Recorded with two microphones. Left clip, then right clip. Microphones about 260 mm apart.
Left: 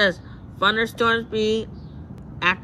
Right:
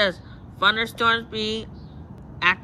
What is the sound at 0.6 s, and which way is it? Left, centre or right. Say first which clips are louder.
Speech: left 1 dB; centre.